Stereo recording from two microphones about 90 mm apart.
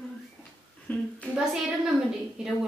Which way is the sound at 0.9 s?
15° left (ahead or behind).